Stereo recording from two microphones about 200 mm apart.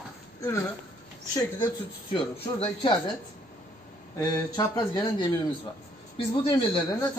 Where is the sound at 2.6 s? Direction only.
25° left (ahead or behind).